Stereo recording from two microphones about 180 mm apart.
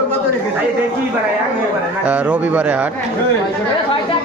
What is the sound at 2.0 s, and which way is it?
Speech, 5° right (ahead or behind).